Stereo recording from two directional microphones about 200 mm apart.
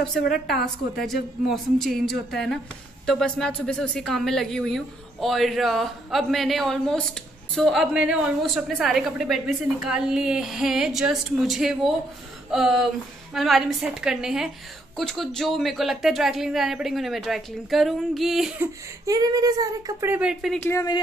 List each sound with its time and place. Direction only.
0.0 s speech: centre (ahead or behind)
19.0 s speech: 20° right (ahead or behind); by 20.6 s centre (ahead or behind)
20.6 s speech: 15° left (ahead or behind)